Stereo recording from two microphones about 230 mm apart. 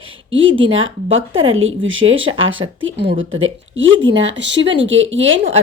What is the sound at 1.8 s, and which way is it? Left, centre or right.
Speech, right.